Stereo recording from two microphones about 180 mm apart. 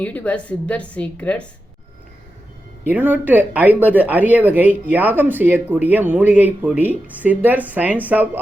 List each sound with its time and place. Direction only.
0.0 s a woman's voice: 10° left (ahead or behind)
2.8 s speech: 10° right (ahead or behind)